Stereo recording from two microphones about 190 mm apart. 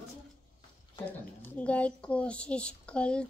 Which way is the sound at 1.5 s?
5° left (ahead or behind).